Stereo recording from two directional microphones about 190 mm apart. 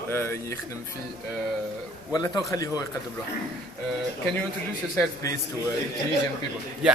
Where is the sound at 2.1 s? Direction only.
20° left (ahead or behind).